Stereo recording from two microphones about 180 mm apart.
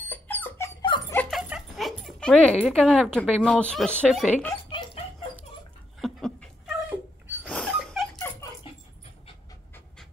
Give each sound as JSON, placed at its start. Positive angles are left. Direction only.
{"t": 0.0, "sound": "dog", "side_deg": 10}
{"t": 1.3, "sound": "dog", "side_deg": -5}
{"t": 2.6, "sound": "speech", "side_deg": 5}
{"t": 4.6, "sound": "dog", "side_deg": 25}
{"t": 5.9, "sound": "dog", "side_deg": 0}